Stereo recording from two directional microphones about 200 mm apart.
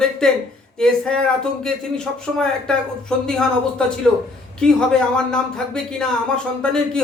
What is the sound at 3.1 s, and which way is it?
Speech, 5° left (ahead or behind).